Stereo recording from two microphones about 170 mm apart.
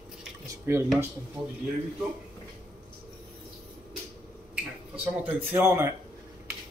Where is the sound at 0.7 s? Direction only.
15° right (ahead or behind).